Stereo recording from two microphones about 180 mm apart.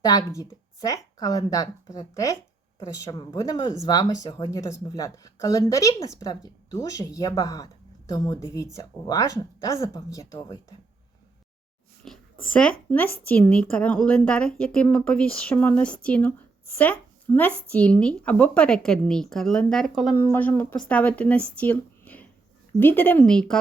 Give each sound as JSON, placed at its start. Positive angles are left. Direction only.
{"t": 0.0, "sound": "speech", "side_deg": 20}
{"t": 12.0, "sound": "a child's voice", "side_deg": 5}